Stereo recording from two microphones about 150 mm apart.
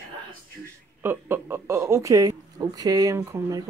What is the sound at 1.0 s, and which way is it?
Speech, 15° right (ahead or behind).